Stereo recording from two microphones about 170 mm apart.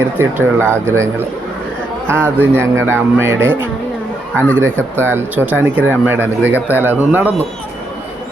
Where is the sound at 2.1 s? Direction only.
15° right (ahead or behind).